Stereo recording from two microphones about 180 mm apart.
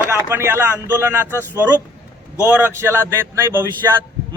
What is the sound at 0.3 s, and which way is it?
A man's voice, 15° right (ahead or behind).